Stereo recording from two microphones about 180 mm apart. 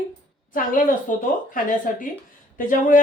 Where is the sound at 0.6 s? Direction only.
50° left (ahead or behind).